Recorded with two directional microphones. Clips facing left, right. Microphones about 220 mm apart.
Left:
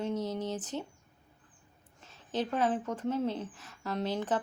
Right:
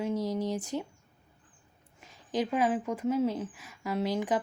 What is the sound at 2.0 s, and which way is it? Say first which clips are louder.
Speech: right 3 dB; 10° right (ahead or behind).